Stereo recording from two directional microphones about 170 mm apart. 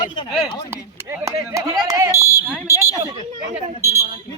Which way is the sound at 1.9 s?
20° right (ahead or behind).